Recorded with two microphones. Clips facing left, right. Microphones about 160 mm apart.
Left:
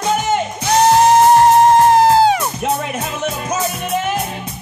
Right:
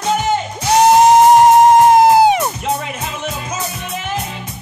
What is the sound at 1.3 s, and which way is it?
Music, 15° right (ahead or behind).